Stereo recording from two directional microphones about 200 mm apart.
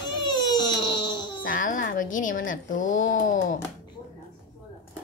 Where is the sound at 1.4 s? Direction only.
40° left (ahead or behind).